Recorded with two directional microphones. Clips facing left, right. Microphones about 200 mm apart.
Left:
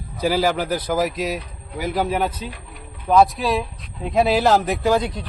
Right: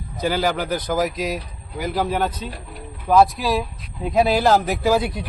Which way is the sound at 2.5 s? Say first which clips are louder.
Right 3 dB; 40° right (ahead or behind).